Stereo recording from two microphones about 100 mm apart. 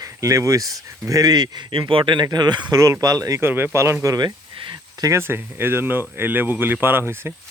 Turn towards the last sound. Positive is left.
turn(degrees=-25)  # may be behind; listen again after turning